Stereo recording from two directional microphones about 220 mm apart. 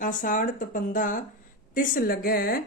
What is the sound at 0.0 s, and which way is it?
Speech, 35° left (ahead or behind).